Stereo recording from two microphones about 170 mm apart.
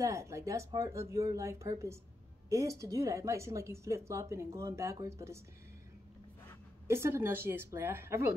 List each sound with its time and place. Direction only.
0.0 s speech: 15° right (ahead or behind)
6.9 s speech: 15° right (ahead or behind)